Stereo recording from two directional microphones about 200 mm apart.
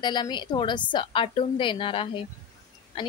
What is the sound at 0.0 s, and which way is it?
Speech, 20° left (ahead or behind).